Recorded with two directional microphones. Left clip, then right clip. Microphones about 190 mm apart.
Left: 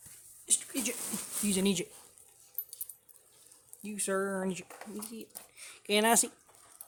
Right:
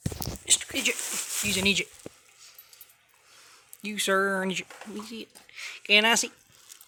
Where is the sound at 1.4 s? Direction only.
25° left (ahead or behind).